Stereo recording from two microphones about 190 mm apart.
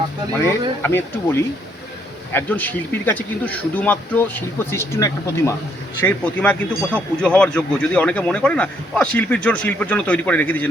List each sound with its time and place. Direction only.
0.8 s speech: 10° left (ahead or behind)